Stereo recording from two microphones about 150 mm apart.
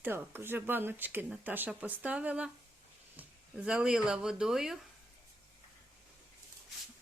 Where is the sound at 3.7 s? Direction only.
5° right (ahead or behind).